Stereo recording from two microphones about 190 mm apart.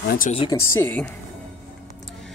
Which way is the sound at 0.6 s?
15° left (ahead or behind).